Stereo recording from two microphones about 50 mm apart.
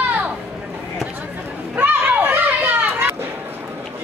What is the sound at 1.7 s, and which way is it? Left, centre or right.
Children playing, right.